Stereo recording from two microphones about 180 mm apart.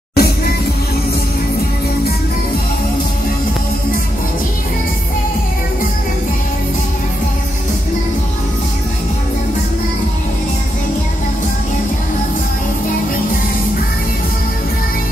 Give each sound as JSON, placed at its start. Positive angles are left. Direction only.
{"t": 0.1, "sound": "music", "side_deg": 60}